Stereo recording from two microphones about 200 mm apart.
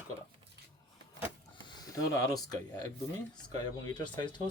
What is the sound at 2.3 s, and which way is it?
Speech, 20° left (ahead or behind).